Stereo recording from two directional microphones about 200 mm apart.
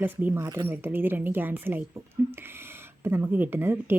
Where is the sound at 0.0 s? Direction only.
10° right (ahead or behind).